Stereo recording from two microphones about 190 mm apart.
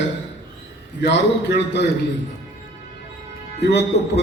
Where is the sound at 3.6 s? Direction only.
60° left (ahead or behind).